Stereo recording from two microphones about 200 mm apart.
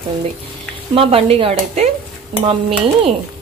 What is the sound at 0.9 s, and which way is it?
A woman's voice, 30° right (ahead or behind).